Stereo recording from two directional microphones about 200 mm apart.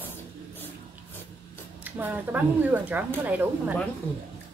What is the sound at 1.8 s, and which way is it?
Speech, 10° right (ahead or behind).